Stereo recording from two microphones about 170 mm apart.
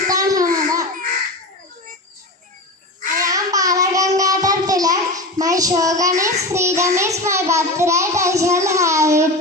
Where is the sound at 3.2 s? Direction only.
20° right (ahead or behind).